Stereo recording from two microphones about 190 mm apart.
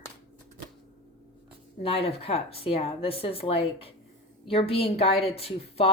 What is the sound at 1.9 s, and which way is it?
A woman's voice, 30° left (ahead or behind).